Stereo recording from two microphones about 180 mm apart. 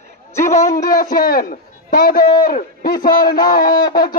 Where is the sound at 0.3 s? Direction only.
15° left (ahead or behind).